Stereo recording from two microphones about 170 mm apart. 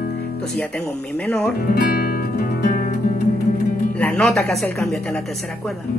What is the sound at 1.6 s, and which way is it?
Music, 60° left (ahead or behind).